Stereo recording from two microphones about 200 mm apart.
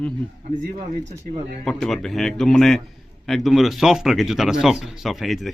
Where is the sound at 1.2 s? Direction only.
40° right (ahead or behind).